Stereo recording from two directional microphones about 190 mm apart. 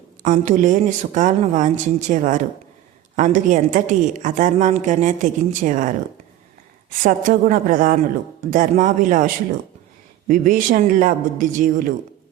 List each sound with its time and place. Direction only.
0.2 s a woman's voice: 40° right (ahead or behind)
7.0 s a man's voice: 45° right (ahead or behind)